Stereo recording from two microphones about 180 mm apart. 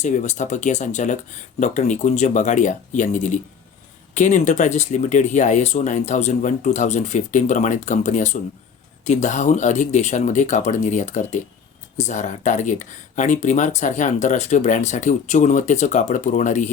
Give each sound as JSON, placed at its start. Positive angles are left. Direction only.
{"t": 0.0, "sound": "speech", "side_deg": 40}